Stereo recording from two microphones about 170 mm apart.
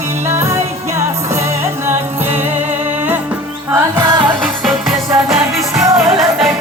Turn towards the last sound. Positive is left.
turn(degrees=0)  # may be behind; listen again after turning